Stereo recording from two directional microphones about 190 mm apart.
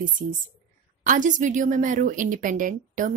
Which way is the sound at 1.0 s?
40° right (ahead or behind).